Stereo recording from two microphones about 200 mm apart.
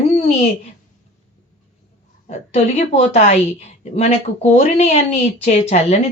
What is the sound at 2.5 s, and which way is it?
Speech, 35° left (ahead or behind).